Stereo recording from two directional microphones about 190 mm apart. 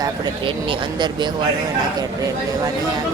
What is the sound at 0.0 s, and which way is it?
Speech, 25° right (ahead or behind).